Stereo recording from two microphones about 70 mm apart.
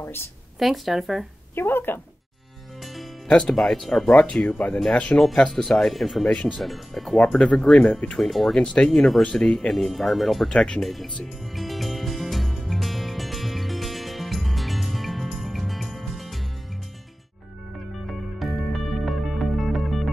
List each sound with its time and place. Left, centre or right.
0.0 s speech: left
0.6 s speech: centre
1.5 s speech: left
3.3 s speech: centre
4.1 s speech: centre
8.2 s speech: centre
11.5 s music: centre
17.9 s music: centre